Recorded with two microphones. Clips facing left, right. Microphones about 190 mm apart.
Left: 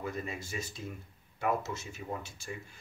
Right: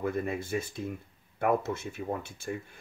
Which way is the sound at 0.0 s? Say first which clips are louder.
Right 7 dB; 55° right (ahead or behind).